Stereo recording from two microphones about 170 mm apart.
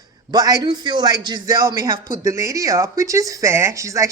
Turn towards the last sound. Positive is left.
turn(degrees=-20)  # may be behind; listen again after turning